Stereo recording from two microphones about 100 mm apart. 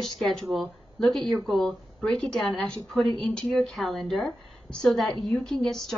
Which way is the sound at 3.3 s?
5° left (ahead or behind).